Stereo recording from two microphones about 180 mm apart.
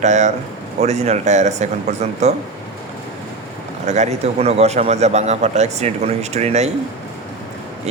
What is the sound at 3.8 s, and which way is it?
A man's voice, 40° right (ahead or behind).